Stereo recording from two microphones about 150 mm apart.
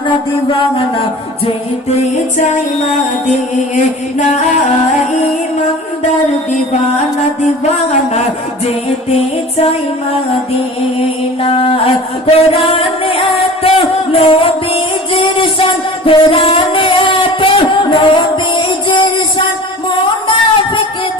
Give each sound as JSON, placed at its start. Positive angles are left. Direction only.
{"t": 1.9, "sound": "music", "side_deg": 50}
{"t": 4.2, "sound": "music", "side_deg": 50}
{"t": 7.6, "sound": "music", "side_deg": 50}
{"t": 11.4, "sound": "music", "side_deg": 40}